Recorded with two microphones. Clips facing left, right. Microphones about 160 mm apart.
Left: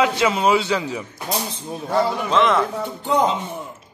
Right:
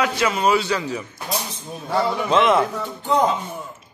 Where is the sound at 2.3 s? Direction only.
15° right (ahead or behind).